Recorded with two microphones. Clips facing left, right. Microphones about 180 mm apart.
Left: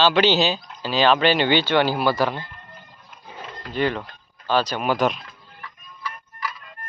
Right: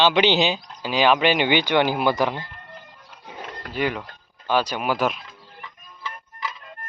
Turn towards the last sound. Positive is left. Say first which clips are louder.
# left 1 dB
turn(degrees=-20)  # may be behind; listen again after turning